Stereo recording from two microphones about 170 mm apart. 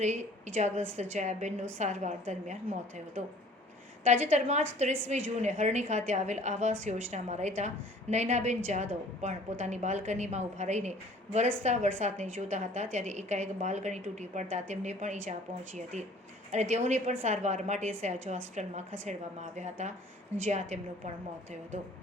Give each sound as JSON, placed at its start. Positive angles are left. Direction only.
{"t": 0.0, "sound": "a woman's voice", "side_deg": -40}
{"t": 4.0, "sound": "a woman's voice", "side_deg": -40}